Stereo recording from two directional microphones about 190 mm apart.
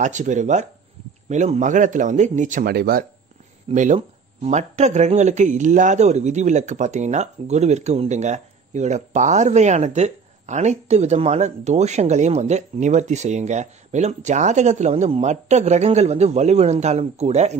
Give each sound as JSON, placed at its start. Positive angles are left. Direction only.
{"t": 0.0, "sound": "speech", "side_deg": -40}
{"t": 3.7, "sound": "speech", "side_deg": -40}